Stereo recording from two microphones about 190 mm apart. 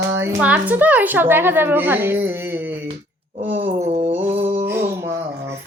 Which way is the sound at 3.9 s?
35° right (ahead or behind).